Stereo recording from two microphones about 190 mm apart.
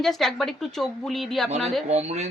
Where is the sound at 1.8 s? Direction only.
35° right (ahead or behind).